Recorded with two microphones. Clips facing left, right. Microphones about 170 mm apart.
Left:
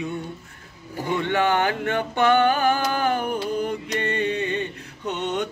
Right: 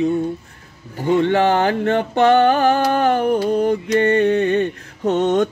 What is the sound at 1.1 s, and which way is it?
Male singing, 35° right (ahead or behind).